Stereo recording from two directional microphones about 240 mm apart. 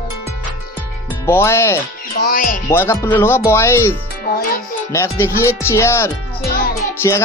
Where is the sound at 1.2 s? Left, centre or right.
Centre.